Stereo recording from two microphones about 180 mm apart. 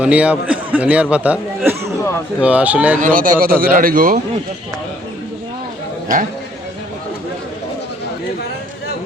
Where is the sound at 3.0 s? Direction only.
50° right (ahead or behind).